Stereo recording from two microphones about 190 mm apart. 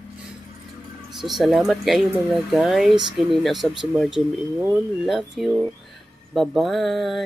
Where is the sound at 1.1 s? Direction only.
Centre (ahead or behind).